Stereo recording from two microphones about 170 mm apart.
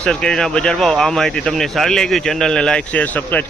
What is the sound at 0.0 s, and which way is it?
Speech, 5° left (ahead or behind).